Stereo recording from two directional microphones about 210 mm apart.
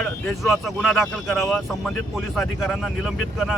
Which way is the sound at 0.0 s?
Centre (ahead or behind).